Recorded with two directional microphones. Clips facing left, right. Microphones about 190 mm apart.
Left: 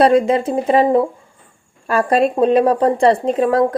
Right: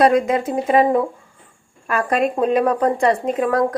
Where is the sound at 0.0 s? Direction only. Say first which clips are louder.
Left 3 dB; 30° left (ahead or behind).